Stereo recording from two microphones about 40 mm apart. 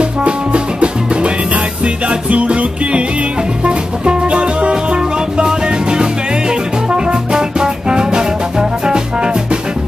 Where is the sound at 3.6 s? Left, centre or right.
Right.